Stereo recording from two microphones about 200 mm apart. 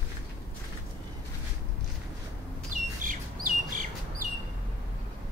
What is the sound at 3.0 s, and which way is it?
Bird, 40° right (ahead or behind).